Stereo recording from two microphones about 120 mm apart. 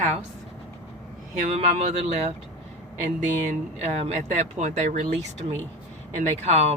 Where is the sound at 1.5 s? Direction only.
60° right (ahead or behind).